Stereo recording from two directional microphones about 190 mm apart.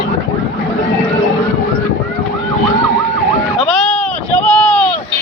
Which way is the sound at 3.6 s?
5° left (ahead or behind).